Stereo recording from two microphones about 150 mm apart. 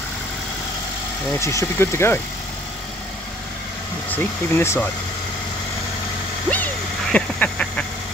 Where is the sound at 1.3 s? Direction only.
20° left (ahead or behind).